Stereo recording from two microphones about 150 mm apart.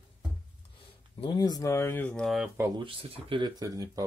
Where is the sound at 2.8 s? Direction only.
40° right (ahead or behind).